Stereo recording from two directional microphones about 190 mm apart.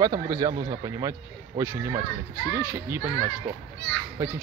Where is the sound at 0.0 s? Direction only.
20° right (ahead or behind).